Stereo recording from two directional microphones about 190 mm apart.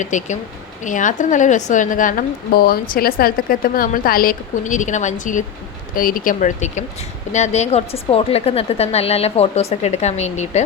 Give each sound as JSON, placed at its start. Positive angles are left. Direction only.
{"t": 0.0, "sound": "a woman's voice", "side_deg": 40}